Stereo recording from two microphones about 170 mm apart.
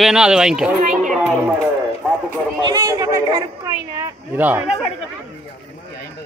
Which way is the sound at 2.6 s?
20° right (ahead or behind).